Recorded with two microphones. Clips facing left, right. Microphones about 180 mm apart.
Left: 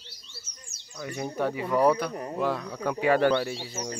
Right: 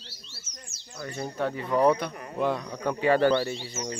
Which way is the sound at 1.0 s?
10° left (ahead or behind).